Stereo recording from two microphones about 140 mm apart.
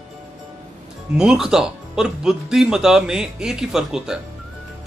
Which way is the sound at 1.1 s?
5° right (ahead or behind).